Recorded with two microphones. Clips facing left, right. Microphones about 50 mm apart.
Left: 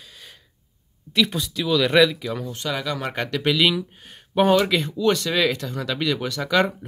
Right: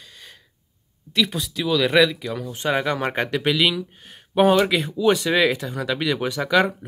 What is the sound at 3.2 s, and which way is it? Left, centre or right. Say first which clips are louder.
Speech: left 2 dB; centre.